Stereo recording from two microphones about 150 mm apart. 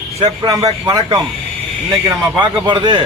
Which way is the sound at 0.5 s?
25° right (ahead or behind).